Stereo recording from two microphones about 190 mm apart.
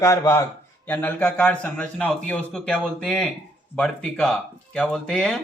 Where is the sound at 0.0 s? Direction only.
15° left (ahead or behind).